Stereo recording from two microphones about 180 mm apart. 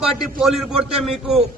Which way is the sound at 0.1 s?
Centre (ahead or behind).